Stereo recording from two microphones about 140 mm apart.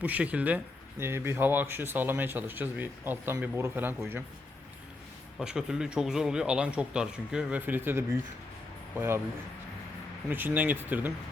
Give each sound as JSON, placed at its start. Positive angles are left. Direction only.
{"t": 0.0, "sound": "speech", "side_deg": -10}
{"t": 5.4, "sound": "speech", "side_deg": -5}
{"t": 10.2, "sound": "speech", "side_deg": -15}